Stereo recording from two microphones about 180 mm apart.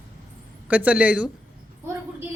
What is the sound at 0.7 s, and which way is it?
Speech, 10° right (ahead or behind).